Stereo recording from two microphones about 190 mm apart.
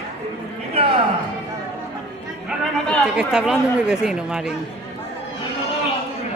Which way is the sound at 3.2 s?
5° right (ahead or behind).